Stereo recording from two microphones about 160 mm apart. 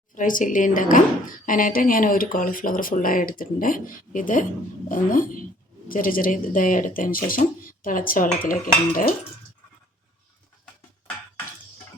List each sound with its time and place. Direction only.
0.2 s speech: 55° left (ahead or behind)